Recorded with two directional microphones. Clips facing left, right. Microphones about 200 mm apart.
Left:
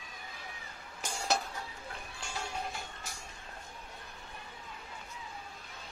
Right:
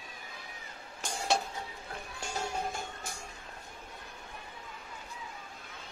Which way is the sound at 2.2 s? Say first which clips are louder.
Right 4 dB; 45° right (ahead or behind).